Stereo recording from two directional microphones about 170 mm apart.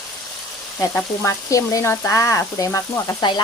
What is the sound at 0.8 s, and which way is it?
Frying, 15° left (ahead or behind).